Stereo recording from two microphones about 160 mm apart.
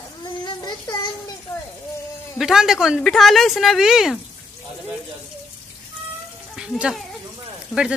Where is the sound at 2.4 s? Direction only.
5° right (ahead or behind).